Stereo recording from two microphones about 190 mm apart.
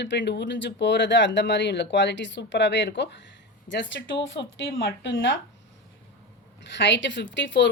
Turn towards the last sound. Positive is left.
turn(degrees=70)  # may be behind; listen again after turning